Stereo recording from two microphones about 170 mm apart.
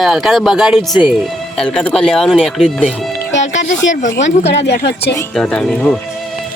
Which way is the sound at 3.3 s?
45° left (ahead or behind).